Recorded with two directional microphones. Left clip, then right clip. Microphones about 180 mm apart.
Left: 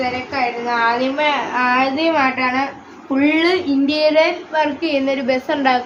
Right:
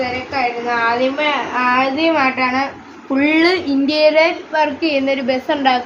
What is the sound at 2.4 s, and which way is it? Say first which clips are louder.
Child singing: right 1 dB; 30° right (ahead or behind).